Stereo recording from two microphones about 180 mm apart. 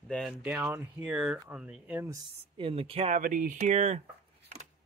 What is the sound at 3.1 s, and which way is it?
Speech, 50° right (ahead or behind).